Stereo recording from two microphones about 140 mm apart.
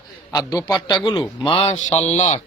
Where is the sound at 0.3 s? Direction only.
25° left (ahead or behind).